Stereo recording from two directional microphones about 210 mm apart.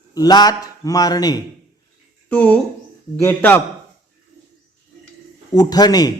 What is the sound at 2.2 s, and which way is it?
A man's voice, 5° left (ahead or behind).